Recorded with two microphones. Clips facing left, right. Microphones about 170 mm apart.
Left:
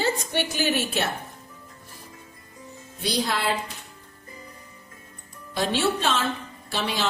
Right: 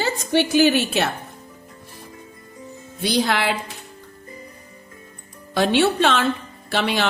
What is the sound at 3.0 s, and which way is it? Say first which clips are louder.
Speech: right 5 dB; 75° right (ahead or behind).